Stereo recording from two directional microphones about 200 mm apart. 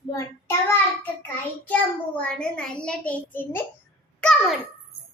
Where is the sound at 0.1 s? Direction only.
15° left (ahead or behind).